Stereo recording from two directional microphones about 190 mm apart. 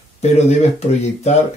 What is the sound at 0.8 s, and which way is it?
Speech, 35° left (ahead or behind).